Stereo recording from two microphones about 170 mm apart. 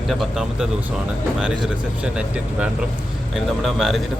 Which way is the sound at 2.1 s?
5° right (ahead or behind).